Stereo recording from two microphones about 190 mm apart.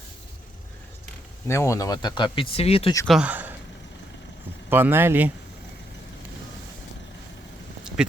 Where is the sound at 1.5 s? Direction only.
15° left (ahead or behind); by 2.9 s 30° left (ahead or behind).